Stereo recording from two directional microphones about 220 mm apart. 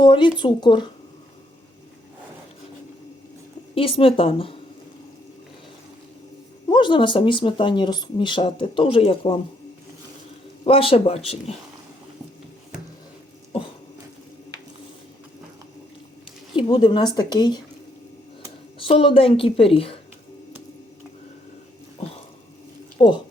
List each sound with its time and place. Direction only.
0.0 s speech: 20° left (ahead or behind)
3.8 s speech: 25° left (ahead or behind)
6.7 s speech: 20° left (ahead or behind)
10.6 s speech: 25° left (ahead or behind)
16.6 s speech: 20° left (ahead or behind)
18.8 s speech: 25° left (ahead or behind)